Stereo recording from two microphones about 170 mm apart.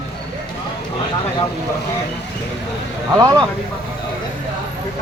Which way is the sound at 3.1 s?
20° right (ahead or behind).